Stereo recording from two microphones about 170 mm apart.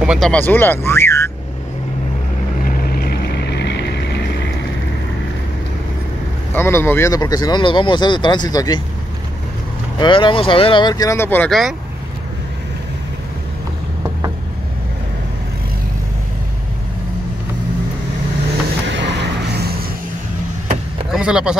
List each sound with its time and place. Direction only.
0.0 s a sound: 5° right (ahead or behind)
0.3 s speech: 10° left (ahead or behind)
2.6 s boat: 70° left (ahead or behind); by 4.2 s 85° left
6.5 s speech: 15° left (ahead or behind)
9.9 s speech: 30° left (ahead or behind); by 11.5 s 10° left (ahead or behind)
18.9 s a sound: 90° right
21.1 s speech: 5° right (ahead or behind)